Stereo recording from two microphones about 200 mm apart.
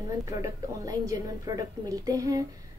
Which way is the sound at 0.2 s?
15° right (ahead or behind).